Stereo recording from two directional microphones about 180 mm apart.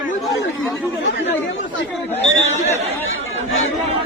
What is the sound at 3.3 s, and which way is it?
Speech, 90° left.